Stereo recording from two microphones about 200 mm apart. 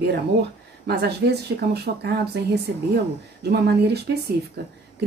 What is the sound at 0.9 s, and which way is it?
Speech, 55° right (ahead or behind).